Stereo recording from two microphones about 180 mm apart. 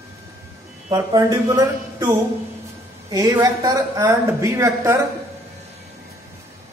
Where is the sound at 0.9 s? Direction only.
15° right (ahead or behind).